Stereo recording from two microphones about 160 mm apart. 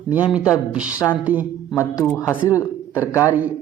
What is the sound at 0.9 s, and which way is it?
Speech, 20° left (ahead or behind).